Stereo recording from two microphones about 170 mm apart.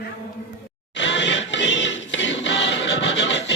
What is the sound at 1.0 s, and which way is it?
Music, 90° left.